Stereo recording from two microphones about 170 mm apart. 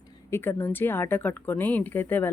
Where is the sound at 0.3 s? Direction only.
15° left (ahead or behind).